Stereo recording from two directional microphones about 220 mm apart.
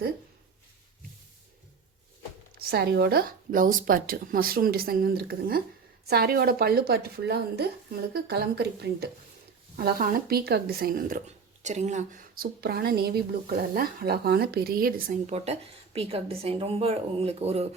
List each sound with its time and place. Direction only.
2.6 s speech: 45° right (ahead or behind)
15.4 s a woman's voice: 30° right (ahead or behind)